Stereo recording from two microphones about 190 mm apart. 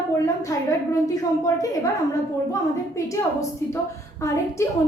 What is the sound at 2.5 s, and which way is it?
A woman's voice, 15° left (ahead or behind).